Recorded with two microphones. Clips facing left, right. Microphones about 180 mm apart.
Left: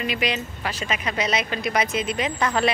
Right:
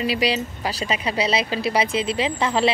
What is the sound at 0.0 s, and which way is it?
Speech, 35° right (ahead or behind).